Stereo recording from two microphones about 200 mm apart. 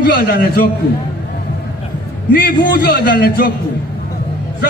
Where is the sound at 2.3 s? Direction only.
45° left (ahead or behind).